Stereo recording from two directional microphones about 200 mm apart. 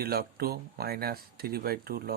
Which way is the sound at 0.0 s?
50° right (ahead or behind).